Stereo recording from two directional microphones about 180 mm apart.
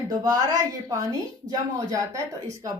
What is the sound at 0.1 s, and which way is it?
A woman's voice, 20° right (ahead or behind).